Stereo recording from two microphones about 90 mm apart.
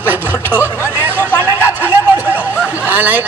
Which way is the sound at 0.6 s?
25° left (ahead or behind).